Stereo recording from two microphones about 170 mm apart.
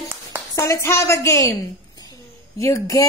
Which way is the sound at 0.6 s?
15° left (ahead or behind).